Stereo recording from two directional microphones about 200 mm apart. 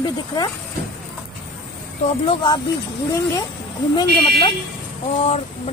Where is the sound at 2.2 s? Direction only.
25° left (ahead or behind).